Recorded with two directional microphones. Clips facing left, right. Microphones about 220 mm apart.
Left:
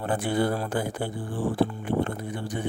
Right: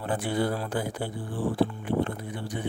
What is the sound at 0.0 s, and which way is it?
Speech, 50° left (ahead or behind).